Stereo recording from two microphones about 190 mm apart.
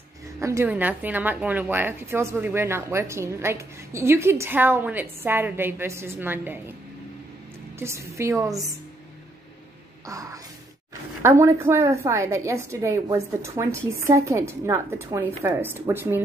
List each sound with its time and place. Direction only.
0.4 s a woman's voice: 15° right (ahead or behind)
7.8 s a woman's voice: 15° right (ahead or behind)
10.0 s a woman's voice: 15° right (ahead or behind)